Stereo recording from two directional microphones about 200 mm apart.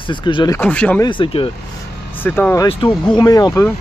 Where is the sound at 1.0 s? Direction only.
25° left (ahead or behind).